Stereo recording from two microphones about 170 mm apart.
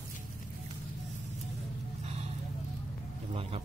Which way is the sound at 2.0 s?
40° right (ahead or behind).